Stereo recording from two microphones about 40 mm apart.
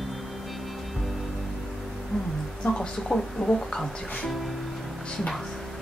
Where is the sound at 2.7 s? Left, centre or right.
Centre.